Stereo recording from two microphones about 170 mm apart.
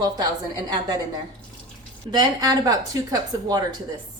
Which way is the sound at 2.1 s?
20° right (ahead or behind).